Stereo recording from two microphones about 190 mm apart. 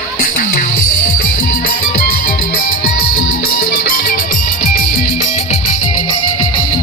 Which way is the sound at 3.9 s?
45° left (ahead or behind).